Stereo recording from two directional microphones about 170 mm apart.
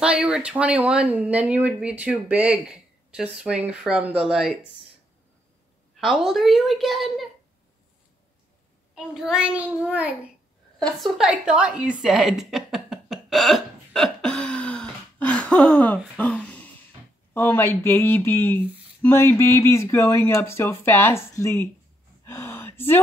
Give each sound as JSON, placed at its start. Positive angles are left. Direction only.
{"t": 0.0, "sound": "a woman's voice", "side_deg": -5}
{"t": 5.9, "sound": "a woman's voice", "side_deg": 0}
{"t": 8.9, "sound": "speech", "side_deg": -5}
{"t": 10.8, "sound": "a sound", "side_deg": 0}
{"t": 17.3, "sound": "speech", "side_deg": 15}
{"t": 22.2, "sound": "gasp", "side_deg": 15}